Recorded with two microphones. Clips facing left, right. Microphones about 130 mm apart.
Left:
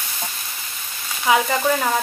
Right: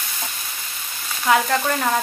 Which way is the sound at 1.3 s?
5° left (ahead or behind).